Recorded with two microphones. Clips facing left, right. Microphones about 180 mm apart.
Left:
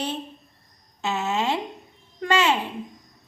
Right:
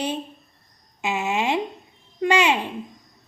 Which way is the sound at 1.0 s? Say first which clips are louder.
Right 1 dB; 15° right (ahead or behind).